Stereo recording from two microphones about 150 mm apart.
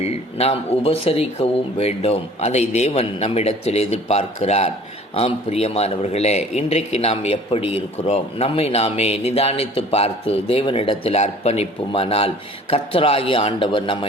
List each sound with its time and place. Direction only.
0.0 s a man's voice: 45° left (ahead or behind)